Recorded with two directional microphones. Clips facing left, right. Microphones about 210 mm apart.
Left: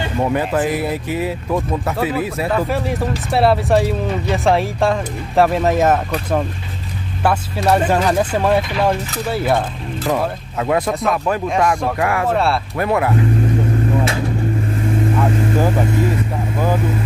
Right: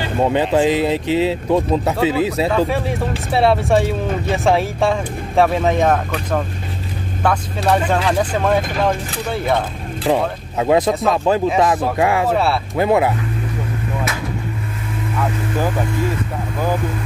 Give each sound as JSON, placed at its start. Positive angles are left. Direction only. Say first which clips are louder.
{"t": 0.2, "sound": "speech", "louder": "right 3 dB", "side_deg": -25}
{"t": 2.5, "sound": "speech", "louder": "right 1 dB", "side_deg": 0}
{"t": 10.0, "sound": "speech", "louder": "right 2 dB", "side_deg": -20}
{"t": 12.3, "sound": "speech", "louder": "even", "side_deg": 0}
{"t": 12.7, "sound": "speech", "louder": "right 5 dB", "side_deg": -20}